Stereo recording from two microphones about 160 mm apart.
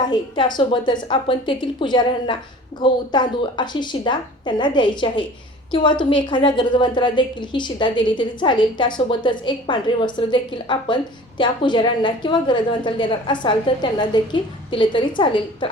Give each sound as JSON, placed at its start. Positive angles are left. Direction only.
{"t": 0.5, "sound": "a woman's voice", "side_deg": 30}